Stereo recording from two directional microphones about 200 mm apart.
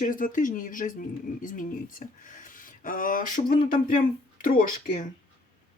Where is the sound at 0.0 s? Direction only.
40° left (ahead or behind).